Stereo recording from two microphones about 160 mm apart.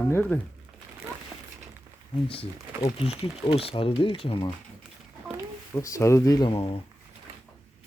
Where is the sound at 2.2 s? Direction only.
35° left (ahead or behind).